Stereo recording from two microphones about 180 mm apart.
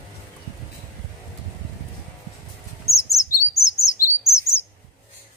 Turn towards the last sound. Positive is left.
turn(degrees=15)  # may be behind; listen again after turning